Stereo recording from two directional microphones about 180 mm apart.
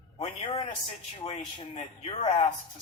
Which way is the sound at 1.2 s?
35° left (ahead or behind).